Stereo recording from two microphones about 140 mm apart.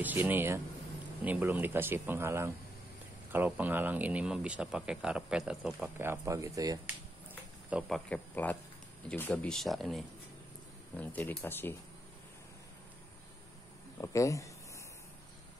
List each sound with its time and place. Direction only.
0.0 s speech: 15° right (ahead or behind)
5.8 s speech: 15° right (ahead or behind)
7.7 s speech: 10° right (ahead or behind)
8.1 s speech: 10° left (ahead or behind)
11.0 s speech: 15° left (ahead or behind)
14.0 s speech: 20° left (ahead or behind)